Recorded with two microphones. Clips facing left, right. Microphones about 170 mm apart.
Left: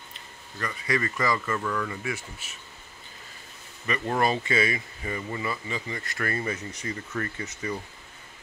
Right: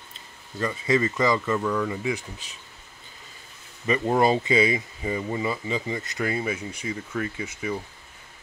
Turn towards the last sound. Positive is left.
turn(degrees=-10)  # may be behind; listen again after turning